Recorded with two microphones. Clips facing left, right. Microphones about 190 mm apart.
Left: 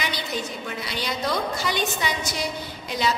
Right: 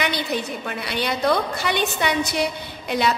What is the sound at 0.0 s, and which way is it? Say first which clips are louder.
A woman's voice: right 5 dB; 65° right (ahead or behind).